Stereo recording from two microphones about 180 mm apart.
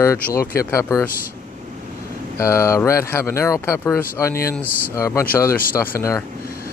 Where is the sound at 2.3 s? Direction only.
15° left (ahead or behind).